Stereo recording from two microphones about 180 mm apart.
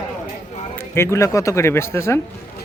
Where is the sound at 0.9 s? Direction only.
15° left (ahead or behind).